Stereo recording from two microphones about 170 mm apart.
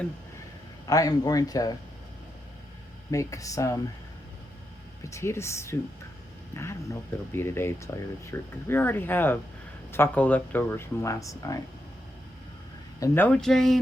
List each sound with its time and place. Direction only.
0.9 s speech: 20° left (ahead or behind)
3.1 s speech: 20° left (ahead or behind)
5.0 s speech: 15° left (ahead or behind)
13.0 s speech: 10° left (ahead or behind)